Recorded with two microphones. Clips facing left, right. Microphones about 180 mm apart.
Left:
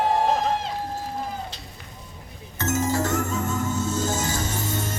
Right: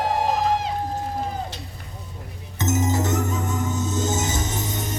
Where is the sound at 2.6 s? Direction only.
20° right (ahead or behind).